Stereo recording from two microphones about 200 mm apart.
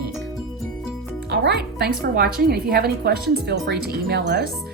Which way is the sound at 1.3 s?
55° right (ahead or behind).